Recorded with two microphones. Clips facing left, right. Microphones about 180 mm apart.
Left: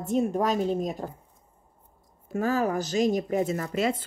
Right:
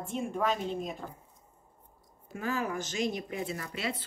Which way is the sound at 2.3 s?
40° left (ahead or behind).